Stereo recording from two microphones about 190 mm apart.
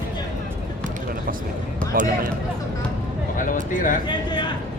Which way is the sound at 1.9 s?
45° right (ahead or behind).